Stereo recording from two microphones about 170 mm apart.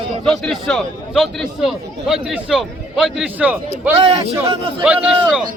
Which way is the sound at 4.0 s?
35° right (ahead or behind).